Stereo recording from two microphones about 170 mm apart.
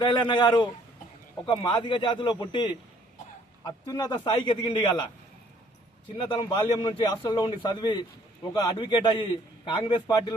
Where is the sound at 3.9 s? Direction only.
20° left (ahead or behind).